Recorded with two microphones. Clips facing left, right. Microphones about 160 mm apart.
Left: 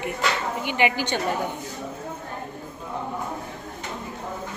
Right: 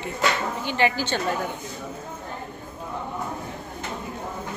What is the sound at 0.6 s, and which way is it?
Speech, 15° left (ahead or behind).